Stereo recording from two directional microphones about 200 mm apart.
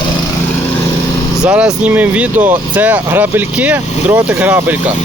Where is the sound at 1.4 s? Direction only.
5° right (ahead or behind).